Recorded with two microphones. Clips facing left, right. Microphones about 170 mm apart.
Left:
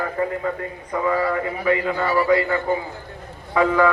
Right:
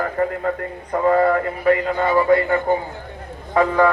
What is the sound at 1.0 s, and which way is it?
Speech, 50° right (ahead or behind).